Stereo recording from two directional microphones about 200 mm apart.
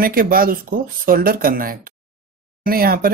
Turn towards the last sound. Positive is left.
turn(degrees=-50)  # may be behind; listen again after turning